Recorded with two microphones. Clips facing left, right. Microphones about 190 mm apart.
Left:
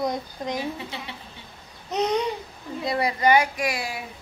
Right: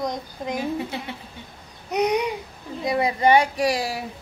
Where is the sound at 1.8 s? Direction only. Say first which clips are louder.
Right 2 dB; 10° right (ahead or behind).